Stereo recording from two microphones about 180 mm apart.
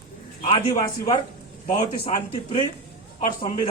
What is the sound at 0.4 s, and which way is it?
Speech, 35° left (ahead or behind).